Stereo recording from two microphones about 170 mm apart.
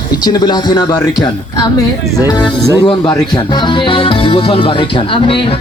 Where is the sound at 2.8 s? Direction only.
25° left (ahead or behind).